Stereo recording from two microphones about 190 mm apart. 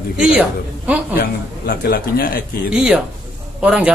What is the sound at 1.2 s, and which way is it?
A man's voice, 55° left (ahead or behind).